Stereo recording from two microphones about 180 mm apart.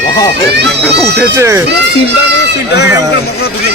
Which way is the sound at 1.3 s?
15° right (ahead or behind).